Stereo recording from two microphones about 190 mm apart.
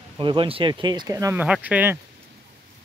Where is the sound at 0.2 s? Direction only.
25° right (ahead or behind); by 2.0 s 10° right (ahead or behind).